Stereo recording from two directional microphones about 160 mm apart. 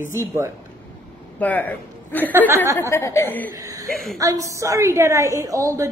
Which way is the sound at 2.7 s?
15° left (ahead or behind).